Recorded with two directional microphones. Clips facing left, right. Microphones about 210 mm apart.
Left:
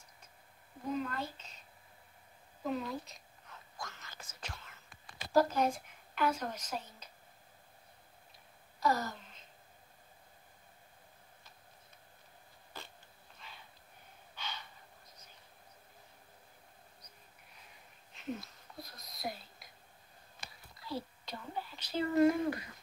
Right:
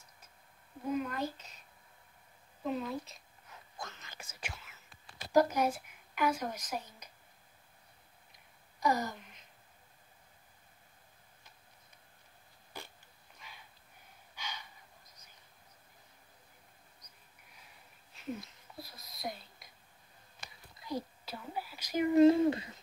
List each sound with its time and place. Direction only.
0.8 s speech: 10° right (ahead or behind)
2.6 s a woman's voice: centre (ahead or behind)
3.7 s whispering: 20° right (ahead or behind)
5.3 s a woman's voice: 15° right (ahead or behind)
8.7 s a sound: 15° right (ahead or behind)
12.7 s a sound: 15° right (ahead or behind)
18.8 s whispering: centre (ahead or behind)
20.8 s a sound: 20° right (ahead or behind)
21.3 s speech: 5° right (ahead or behind); by 22.8 s 25° right (ahead or behind)